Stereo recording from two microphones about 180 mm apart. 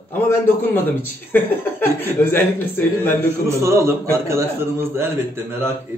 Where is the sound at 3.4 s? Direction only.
15° right (ahead or behind).